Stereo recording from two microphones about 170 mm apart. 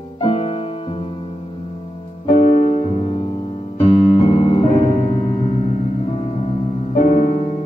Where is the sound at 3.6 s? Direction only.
35° left (ahead or behind).